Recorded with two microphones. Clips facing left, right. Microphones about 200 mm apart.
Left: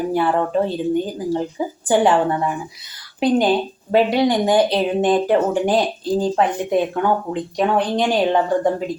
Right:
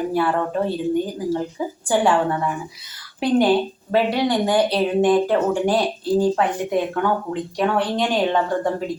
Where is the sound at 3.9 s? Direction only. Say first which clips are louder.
Left 3 dB; 15° left (ahead or behind).